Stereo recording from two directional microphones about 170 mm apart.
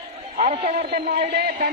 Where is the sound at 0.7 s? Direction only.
70° right (ahead or behind).